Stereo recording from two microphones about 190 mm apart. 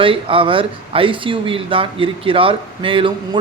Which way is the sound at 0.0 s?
30° right (ahead or behind).